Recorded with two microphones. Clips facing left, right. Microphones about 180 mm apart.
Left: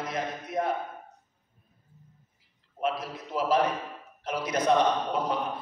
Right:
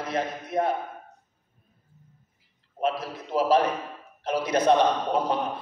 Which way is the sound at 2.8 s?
30° right (ahead or behind).